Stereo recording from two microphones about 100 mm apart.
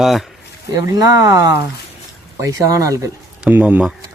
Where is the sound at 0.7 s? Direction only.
35° right (ahead or behind).